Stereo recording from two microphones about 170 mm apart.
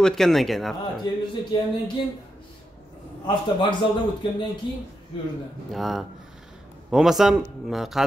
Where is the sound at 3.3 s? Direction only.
25° left (ahead or behind).